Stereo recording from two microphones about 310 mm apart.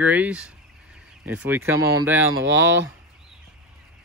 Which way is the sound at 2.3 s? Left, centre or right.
Right.